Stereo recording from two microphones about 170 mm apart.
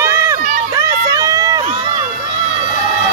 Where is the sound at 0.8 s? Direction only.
20° right (ahead or behind).